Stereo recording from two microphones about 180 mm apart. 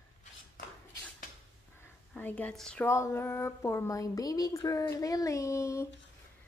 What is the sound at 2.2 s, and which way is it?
A woman's voice, 10° left (ahead or behind).